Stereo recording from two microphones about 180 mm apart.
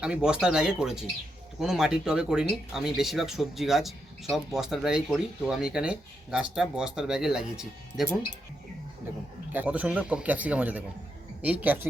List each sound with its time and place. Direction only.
0.0 s speech: 5° right (ahead or behind)
9.5 s a man's voice: 10° right (ahead or behind)